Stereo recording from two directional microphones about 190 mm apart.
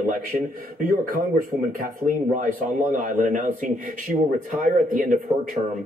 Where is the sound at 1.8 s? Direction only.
45° right (ahead or behind).